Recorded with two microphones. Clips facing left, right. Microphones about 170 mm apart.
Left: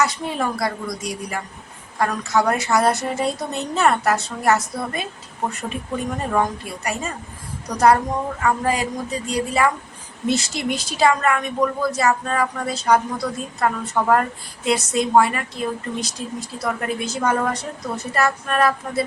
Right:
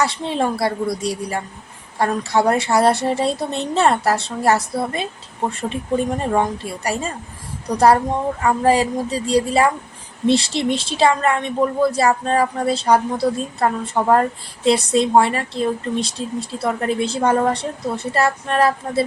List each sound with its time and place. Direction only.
0.0 s speech: 30° right (ahead or behind)
7.7 s a woman's voice: 30° right (ahead or behind)